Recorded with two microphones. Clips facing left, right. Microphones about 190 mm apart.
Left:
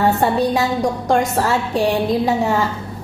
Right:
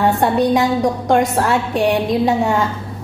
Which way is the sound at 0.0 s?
Centre (ahead or behind).